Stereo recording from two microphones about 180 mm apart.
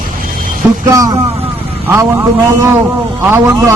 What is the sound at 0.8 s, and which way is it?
A man's voice, 20° right (ahead or behind).